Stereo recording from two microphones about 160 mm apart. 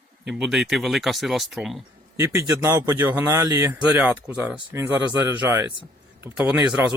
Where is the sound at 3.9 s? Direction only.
10° right (ahead or behind).